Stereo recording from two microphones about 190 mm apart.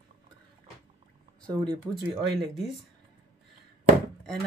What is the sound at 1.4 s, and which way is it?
Speech, 5° left (ahead or behind).